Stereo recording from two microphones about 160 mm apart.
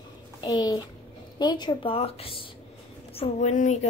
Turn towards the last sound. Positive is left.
turn(degrees=50)  # may be behind; listen again after turning